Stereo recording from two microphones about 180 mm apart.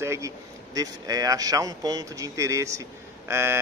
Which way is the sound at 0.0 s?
15° right (ahead or behind).